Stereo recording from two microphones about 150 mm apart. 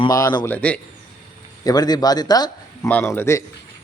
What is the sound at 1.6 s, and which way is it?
Speech, 25° left (ahead or behind).